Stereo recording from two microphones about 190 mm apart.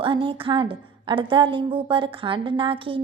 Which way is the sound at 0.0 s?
25° right (ahead or behind).